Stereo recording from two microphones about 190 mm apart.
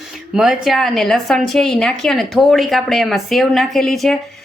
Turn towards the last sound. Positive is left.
turn(degrees=0)  # may be behind; listen again after turning